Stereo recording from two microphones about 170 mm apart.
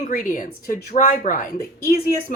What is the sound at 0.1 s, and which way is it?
A woman's voice, 50° left (ahead or behind).